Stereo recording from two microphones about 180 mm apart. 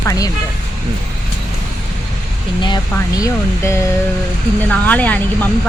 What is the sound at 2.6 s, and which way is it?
Speech, 20° left (ahead or behind).